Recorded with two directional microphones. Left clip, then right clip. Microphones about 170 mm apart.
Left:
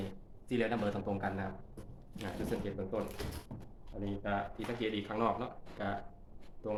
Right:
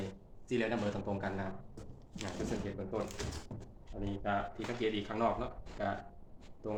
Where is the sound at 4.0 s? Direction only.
35° left (ahead or behind).